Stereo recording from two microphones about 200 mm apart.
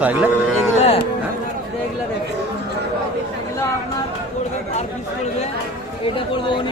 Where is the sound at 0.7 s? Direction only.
35° left (ahead or behind).